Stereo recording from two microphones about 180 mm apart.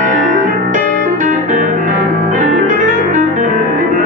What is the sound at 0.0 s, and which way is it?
Music, 45° right (ahead or behind).